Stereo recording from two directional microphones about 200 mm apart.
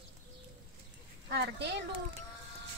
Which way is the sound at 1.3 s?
55° right (ahead or behind).